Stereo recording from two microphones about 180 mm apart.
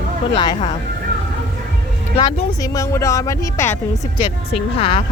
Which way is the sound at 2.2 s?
35° left (ahead or behind).